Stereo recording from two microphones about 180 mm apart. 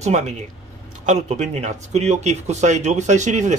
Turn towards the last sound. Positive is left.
turn(degrees=-40)  # may be behind; listen again after turning